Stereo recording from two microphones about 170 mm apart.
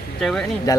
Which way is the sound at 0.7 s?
20° left (ahead or behind).